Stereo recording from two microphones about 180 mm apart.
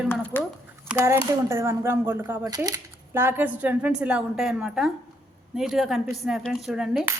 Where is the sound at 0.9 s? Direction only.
15° right (ahead or behind).